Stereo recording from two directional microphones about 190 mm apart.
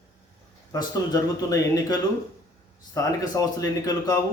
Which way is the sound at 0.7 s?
20° left (ahead or behind).